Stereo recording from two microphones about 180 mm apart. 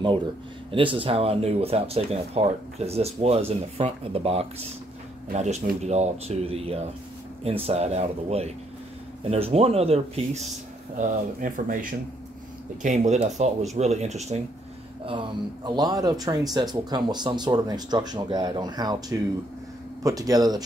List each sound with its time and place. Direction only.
0.7 s speech: 30° right (ahead or behind)
11.0 s speech: 45° right (ahead or behind)
15.0 s speech: 25° right (ahead or behind)